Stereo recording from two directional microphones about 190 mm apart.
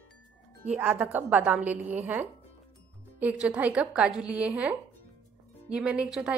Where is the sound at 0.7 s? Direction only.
5° right (ahead or behind).